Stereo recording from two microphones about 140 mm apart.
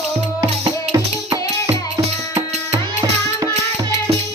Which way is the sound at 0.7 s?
25° right (ahead or behind).